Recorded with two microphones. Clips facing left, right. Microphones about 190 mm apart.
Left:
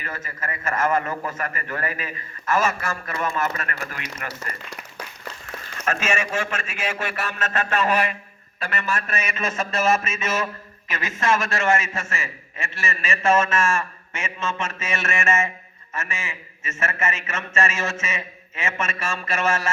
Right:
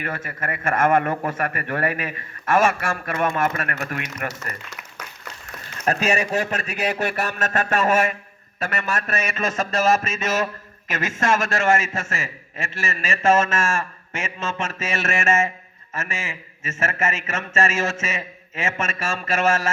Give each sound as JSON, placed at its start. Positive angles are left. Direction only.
{"t": 0.0, "sound": "mantra", "side_deg": -50}
{"t": 4.4, "sound": "applause", "side_deg": 30}
{"t": 5.8, "sound": "a man's voice", "side_deg": -35}
{"t": 8.5, "sound": "mantra", "side_deg": -45}